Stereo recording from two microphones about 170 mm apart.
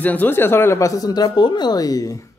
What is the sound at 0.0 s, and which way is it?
Speech, 10° left (ahead or behind).